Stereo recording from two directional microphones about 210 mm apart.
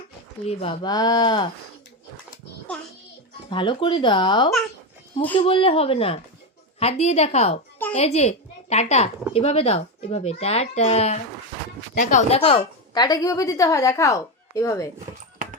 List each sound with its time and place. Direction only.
0.4 s a child's voice: 30° left (ahead or behind)
3.5 s a child's voice: 25° left (ahead or behind)
12.9 s a woman's voice: 20° left (ahead or behind)